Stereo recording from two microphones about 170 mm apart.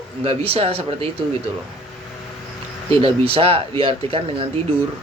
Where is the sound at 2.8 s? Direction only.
35° right (ahead or behind).